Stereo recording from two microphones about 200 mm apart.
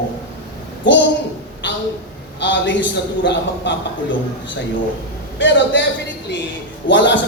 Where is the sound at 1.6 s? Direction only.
65° left (ahead or behind).